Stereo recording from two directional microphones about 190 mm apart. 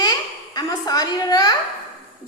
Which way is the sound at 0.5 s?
20° left (ahead or behind).